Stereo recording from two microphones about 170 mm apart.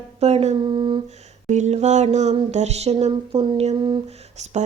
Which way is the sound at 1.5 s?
40° right (ahead or behind).